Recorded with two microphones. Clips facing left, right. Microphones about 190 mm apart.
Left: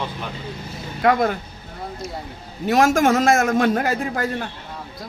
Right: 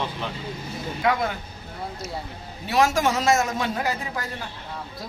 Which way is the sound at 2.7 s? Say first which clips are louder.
Left 5 dB; 50° left (ahead or behind).